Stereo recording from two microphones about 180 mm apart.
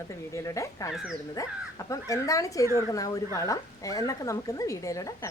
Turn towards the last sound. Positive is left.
turn(degrees=20)  # may be behind; listen again after turning